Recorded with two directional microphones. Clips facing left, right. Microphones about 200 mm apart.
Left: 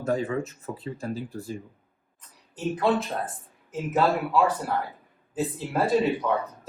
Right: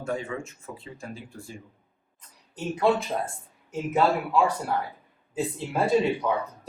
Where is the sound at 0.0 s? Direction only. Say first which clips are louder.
Left 5 dB; 35° left (ahead or behind).